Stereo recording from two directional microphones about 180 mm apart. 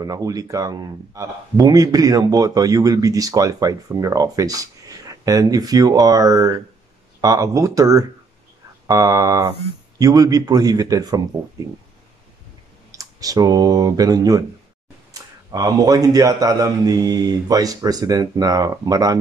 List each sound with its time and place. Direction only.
0.0 s speech: 20° right (ahead or behind)
12.9 s speech: 20° right (ahead or behind)
15.5 s speech: 20° right (ahead or behind)